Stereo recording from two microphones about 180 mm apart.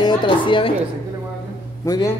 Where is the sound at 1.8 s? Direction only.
20° left (ahead or behind).